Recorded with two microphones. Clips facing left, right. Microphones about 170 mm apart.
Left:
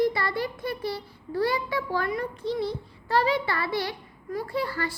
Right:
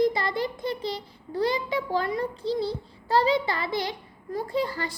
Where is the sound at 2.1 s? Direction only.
30° right (ahead or behind).